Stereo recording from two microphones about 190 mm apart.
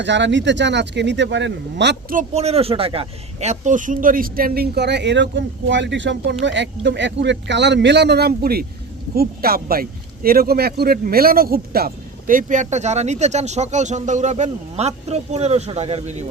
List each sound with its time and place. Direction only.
0.0 s speech: 70° right (ahead or behind)
2.1 s speech: 35° right (ahead or behind)